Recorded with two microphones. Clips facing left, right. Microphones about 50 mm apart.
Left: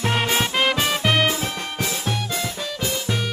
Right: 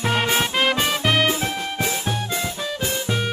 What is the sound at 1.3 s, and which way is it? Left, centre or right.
Music, right.